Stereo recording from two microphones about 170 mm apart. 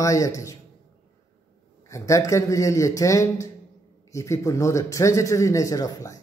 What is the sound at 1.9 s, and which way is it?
A man's voice, 20° left (ahead or behind).